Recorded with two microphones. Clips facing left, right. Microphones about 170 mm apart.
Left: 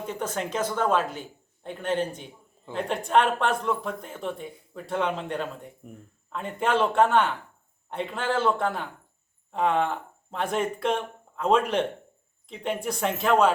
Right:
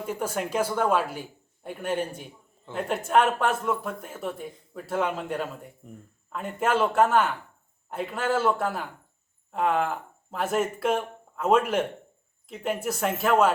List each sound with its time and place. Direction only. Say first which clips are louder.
0.0 s speech: right 1 dB; 10° right (ahead or behind)